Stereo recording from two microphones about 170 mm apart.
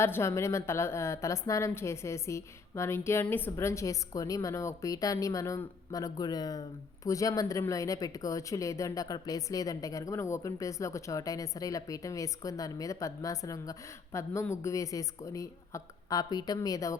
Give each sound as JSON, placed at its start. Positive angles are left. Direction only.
{"t": 0.0, "sound": "a woman's voice", "side_deg": 15}